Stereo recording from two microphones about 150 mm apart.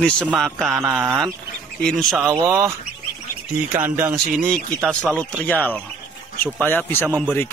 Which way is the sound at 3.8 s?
15° right (ahead or behind).